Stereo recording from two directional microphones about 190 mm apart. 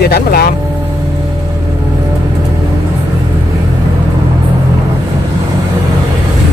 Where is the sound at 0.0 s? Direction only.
55° left (ahead or behind).